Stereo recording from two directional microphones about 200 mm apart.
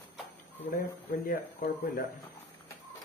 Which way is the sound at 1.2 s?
45° left (ahead or behind).